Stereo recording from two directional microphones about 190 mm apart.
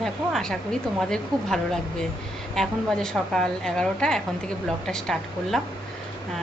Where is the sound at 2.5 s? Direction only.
Centre (ahead or behind).